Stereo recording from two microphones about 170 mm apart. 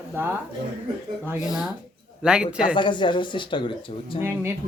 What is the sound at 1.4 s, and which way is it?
Speech, 20° left (ahead or behind).